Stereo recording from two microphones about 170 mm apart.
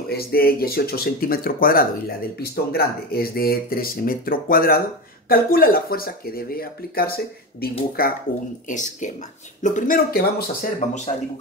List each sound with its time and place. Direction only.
0.1 s speech: 65° left (ahead or behind)
8.6 s speech: 45° left (ahead or behind)